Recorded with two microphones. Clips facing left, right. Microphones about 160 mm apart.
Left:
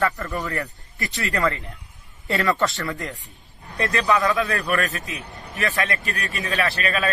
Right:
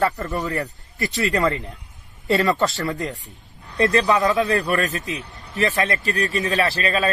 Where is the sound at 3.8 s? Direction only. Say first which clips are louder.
Right 3 dB; 35° right (ahead or behind).